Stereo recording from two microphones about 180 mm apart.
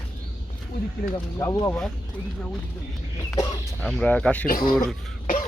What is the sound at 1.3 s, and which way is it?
Speech, 20° left (ahead or behind).